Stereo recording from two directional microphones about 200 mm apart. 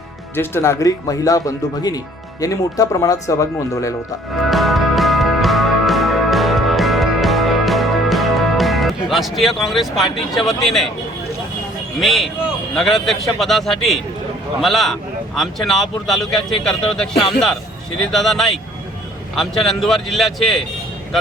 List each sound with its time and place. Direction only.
0.3 s speech: 10° left (ahead or behind)
4.4 s music: centre (ahead or behind)
11.9 s a man's voice: centre (ahead or behind)